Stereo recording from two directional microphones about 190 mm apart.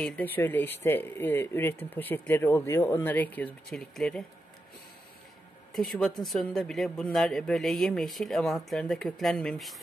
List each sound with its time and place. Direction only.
0.0 s speech: 10° left (ahead or behind)
5.7 s speech: centre (ahead or behind)